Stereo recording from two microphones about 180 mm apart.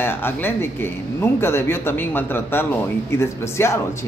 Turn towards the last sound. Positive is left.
turn(degrees=15)  # may be behind; listen again after turning